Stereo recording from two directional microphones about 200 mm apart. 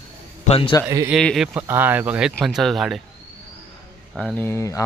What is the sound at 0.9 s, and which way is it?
Speech, 15° right (ahead or behind).